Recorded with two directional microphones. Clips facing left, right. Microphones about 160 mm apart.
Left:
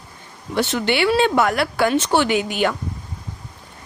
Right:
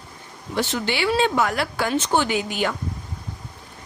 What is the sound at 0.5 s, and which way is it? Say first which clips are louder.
Speech: left 4 dB; 65° left (ahead or behind).